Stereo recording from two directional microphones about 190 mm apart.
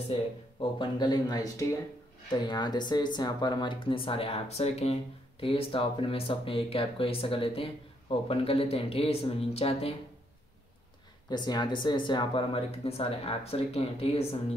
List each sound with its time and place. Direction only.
0.1 s speech: 25° left (ahead or behind)
11.2 s speech: 20° left (ahead or behind)